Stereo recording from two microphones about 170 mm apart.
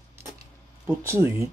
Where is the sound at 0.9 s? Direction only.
15° right (ahead or behind).